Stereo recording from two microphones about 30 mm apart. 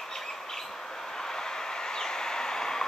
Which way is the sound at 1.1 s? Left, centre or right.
Centre.